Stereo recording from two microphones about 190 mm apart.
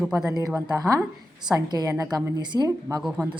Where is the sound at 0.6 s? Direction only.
15° right (ahead or behind).